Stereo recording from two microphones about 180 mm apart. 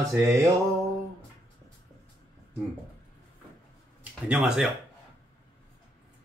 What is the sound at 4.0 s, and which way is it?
Speech, 5° right (ahead or behind).